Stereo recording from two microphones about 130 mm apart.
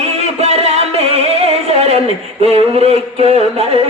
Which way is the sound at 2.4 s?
50° right (ahead or behind).